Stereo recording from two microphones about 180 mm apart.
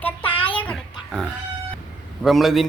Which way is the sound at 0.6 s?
5° left (ahead or behind).